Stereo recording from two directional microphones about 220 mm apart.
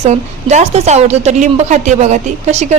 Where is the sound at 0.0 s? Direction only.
30° right (ahead or behind).